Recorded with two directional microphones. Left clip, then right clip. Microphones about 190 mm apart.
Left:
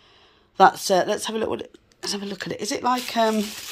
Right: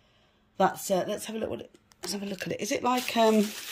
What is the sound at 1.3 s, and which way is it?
Speech, 45° left (ahead or behind).